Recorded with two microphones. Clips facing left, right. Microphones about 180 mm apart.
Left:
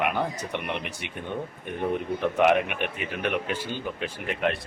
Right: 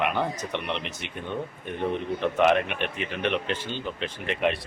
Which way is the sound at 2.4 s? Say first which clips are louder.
Even; 10° left (ahead or behind).